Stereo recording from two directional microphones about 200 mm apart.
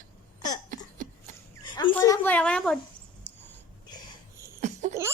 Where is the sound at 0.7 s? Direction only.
40° right (ahead or behind).